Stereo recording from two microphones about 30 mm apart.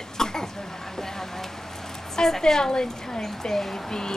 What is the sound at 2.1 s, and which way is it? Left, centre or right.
A woman's voice, centre.